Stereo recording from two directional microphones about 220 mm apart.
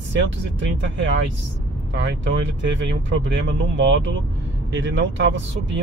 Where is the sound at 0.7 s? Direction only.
50° right (ahead or behind).